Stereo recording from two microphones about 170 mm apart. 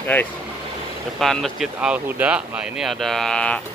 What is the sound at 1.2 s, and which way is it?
Speech, centre (ahead or behind).